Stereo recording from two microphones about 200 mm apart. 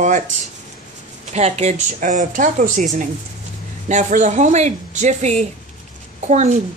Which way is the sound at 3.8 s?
35° right (ahead or behind).